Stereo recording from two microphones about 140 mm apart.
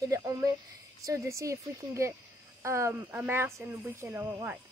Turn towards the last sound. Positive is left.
turn(degrees=-15)  # may be behind; listen again after turning